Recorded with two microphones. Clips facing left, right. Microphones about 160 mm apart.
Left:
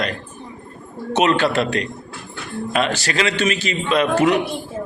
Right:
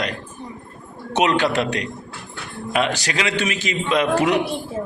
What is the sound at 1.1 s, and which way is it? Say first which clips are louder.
A man's voice: left 1 dB; 15° right (ahead or behind).